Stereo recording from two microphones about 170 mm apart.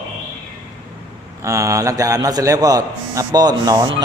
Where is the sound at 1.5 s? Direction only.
20° right (ahead or behind).